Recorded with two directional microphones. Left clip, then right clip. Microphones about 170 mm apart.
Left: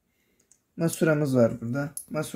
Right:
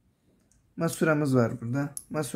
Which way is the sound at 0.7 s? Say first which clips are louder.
Left 1 dB; 35° left (ahead or behind).